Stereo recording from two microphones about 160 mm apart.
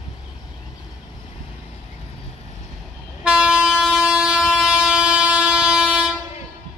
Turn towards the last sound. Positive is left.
turn(degrees=-5)  # may be behind; listen again after turning